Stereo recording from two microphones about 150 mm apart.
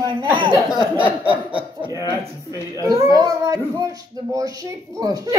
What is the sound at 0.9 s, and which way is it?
Snicker, 10° right (ahead or behind).